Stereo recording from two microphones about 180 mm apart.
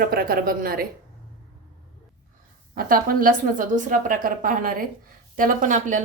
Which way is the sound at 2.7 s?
50° right (ahead or behind).